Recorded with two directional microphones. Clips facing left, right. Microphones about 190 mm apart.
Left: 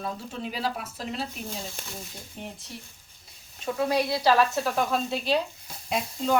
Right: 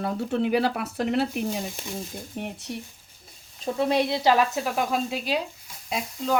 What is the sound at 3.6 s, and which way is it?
Speech, 25° right (ahead or behind).